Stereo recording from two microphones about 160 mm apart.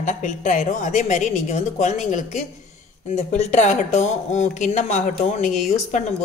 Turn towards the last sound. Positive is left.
turn(degrees=45)  # may be behind; listen again after turning